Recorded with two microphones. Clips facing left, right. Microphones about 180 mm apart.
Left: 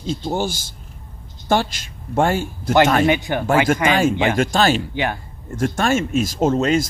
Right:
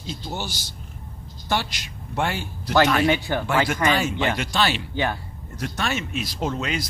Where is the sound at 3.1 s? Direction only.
15° left (ahead or behind).